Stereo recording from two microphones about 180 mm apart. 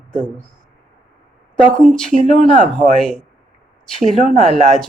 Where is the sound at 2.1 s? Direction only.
40° right (ahead or behind).